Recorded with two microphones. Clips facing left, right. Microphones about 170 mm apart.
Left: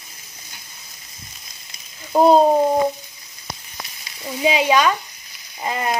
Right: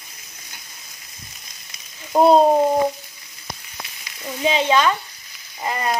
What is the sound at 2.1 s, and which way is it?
Speech, centre (ahead or behind).